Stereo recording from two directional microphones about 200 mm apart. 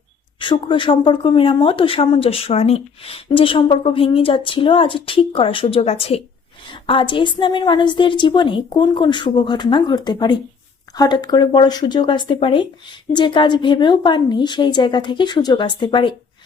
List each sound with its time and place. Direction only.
0.3 s speech: 25° left (ahead or behind)